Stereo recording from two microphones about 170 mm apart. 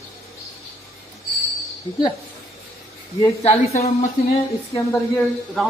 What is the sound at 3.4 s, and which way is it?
Speech, 40° left (ahead or behind).